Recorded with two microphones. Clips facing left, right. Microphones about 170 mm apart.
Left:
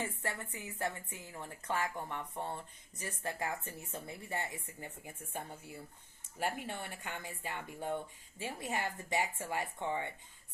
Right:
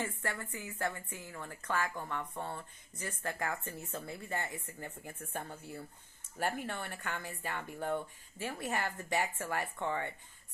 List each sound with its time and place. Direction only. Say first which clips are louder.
0.0 s a woman's voice: right 1 dB; 20° left (ahead or behind)
6.7 s speech: right 2 dB; 15° left (ahead or behind)